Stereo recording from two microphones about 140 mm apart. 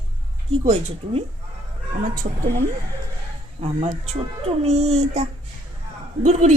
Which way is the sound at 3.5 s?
45° right (ahead or behind).